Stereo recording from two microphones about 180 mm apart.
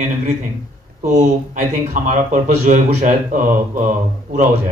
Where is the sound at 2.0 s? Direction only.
45° right (ahead or behind).